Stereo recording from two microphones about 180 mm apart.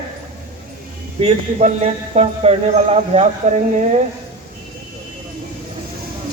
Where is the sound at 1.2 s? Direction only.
40° right (ahead or behind).